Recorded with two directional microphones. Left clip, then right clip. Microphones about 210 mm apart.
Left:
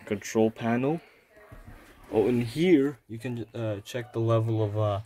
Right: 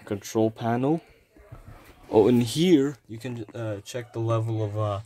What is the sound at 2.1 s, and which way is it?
Speech, 25° right (ahead or behind).